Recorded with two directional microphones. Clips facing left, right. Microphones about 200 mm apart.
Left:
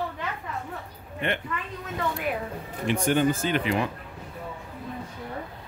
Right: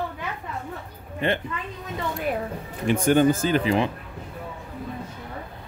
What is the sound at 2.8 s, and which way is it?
Speech, 45° right (ahead or behind).